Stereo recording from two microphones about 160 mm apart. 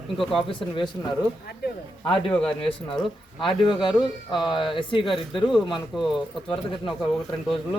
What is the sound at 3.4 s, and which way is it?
Speech, 30° left (ahead or behind).